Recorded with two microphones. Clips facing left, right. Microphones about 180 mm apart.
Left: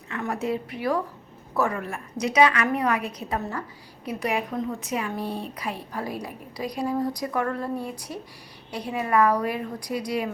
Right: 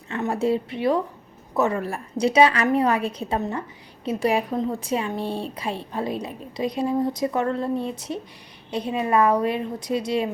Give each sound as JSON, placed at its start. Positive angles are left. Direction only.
{"t": 0.1, "sound": "a woman's voice", "side_deg": -30}